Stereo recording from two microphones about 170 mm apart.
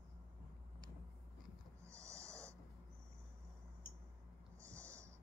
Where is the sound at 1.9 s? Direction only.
15° right (ahead or behind).